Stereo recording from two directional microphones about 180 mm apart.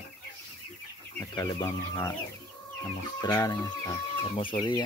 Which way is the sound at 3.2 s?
20° left (ahead or behind).